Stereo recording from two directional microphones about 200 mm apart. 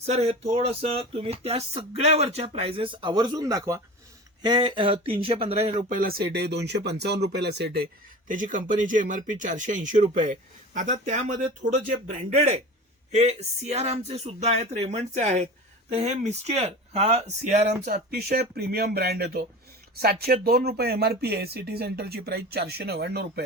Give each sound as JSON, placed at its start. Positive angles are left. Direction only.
{"t": 0.0, "sound": "speech", "side_deg": -30}
{"t": 8.3, "sound": "speech", "side_deg": -40}
{"t": 17.8, "sound": "speech", "side_deg": -50}